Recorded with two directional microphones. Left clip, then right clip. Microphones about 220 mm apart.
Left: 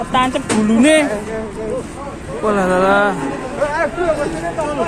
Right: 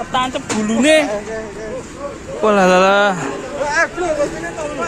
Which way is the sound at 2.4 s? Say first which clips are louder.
Right 3 dB; 40° right (ahead or behind).